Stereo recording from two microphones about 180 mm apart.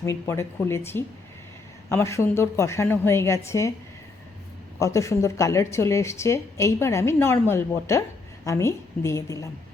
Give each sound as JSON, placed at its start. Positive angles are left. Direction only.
{"t": 0.0, "sound": "a woman's voice", "side_deg": 15}
{"t": 1.9, "sound": "a woman's voice", "side_deg": 15}
{"t": 4.8, "sound": "a woman's voice", "side_deg": 15}